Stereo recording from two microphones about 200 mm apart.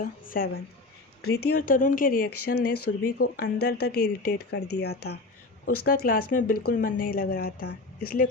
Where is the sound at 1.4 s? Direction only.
90° left.